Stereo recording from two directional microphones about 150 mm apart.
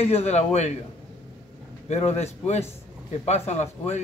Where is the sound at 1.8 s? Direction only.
45° left (ahead or behind).